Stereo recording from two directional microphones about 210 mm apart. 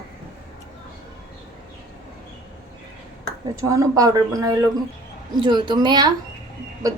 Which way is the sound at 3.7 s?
15° right (ahead or behind).